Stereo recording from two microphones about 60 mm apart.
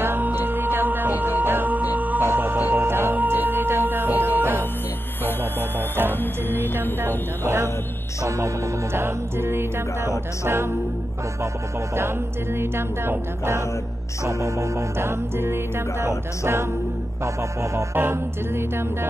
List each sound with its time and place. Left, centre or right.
0.0 s music: right
2.2 s organ: right
3.2 s music: right
5.2 s music: left
6.7 s music: right
7.4 s music: right
8.9 s music: right
12.5 s music: right
14.2 s music: right
17.2 s music: right
17.9 s music: right